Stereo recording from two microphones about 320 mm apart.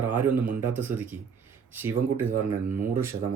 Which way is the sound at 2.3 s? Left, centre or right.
Right.